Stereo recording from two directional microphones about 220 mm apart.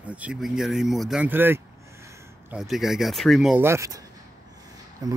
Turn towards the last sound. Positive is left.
turn(degrees=-15)  # may be behind; listen again after turning